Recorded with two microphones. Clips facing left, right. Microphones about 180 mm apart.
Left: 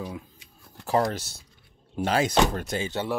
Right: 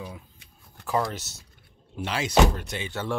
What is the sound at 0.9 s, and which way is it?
Speech, 40° left (ahead or behind).